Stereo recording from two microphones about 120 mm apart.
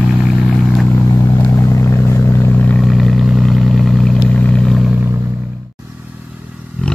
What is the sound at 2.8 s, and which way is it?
Vehicle, centre (ahead or behind).